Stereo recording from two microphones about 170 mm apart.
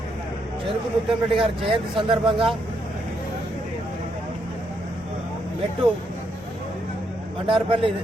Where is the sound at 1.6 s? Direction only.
30° right (ahead or behind).